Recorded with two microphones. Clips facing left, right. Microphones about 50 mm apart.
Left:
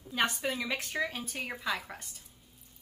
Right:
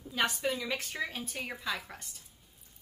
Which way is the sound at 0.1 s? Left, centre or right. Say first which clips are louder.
Even; centre.